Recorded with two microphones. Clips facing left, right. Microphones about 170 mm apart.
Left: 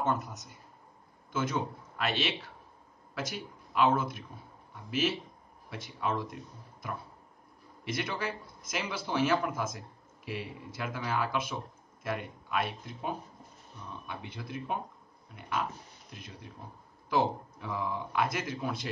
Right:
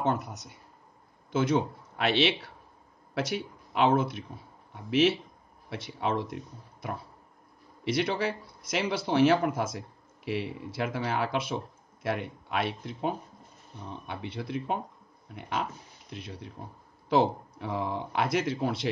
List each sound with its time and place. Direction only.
0.0 s speech: 65° right (ahead or behind)
16.1 s speech: 70° right (ahead or behind)